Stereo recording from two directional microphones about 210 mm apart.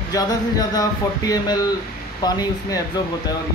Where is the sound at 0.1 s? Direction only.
20° left (ahead or behind).